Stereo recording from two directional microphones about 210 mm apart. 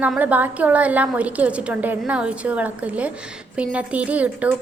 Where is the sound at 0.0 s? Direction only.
5° right (ahead or behind).